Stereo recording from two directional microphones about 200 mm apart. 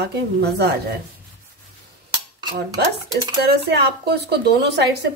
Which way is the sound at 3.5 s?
55° right (ahead or behind).